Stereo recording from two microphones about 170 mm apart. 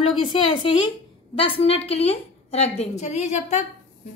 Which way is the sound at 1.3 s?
35° left (ahead or behind).